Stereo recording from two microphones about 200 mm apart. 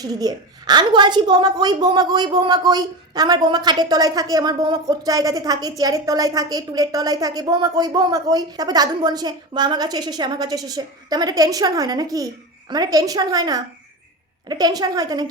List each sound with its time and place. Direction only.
0.0 s a woman's voice: 20° right (ahead or behind)